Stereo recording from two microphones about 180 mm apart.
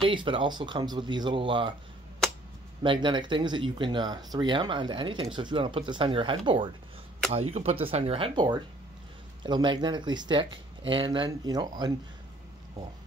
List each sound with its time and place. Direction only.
0.0 s speech: 25° right (ahead or behind)
2.8 s speech: 25° right (ahead or behind)